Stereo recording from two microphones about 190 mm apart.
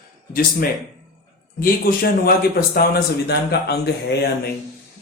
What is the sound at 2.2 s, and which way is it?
A man's voice, 55° left (ahead or behind).